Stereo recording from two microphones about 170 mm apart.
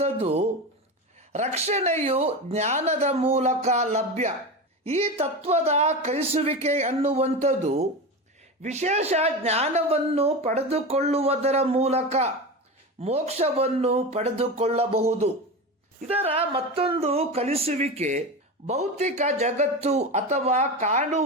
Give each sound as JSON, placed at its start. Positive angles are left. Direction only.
{"t": 0.0, "sound": "a woman's voice", "side_deg": -40}